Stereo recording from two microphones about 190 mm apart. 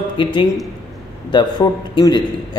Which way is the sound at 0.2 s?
25° left (ahead or behind).